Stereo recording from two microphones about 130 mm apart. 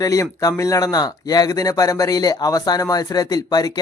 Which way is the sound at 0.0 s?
25° left (ahead or behind).